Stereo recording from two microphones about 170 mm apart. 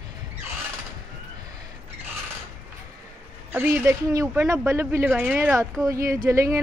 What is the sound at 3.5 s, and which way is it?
Speech, 10° right (ahead or behind).